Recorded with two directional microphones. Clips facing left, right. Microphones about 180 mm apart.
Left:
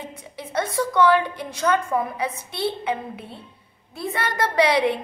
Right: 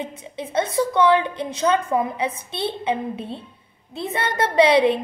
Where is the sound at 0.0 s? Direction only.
20° right (ahead or behind).